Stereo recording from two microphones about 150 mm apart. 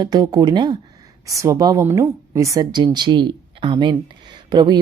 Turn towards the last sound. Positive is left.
turn(degrees=-30)  # may be behind; listen again after turning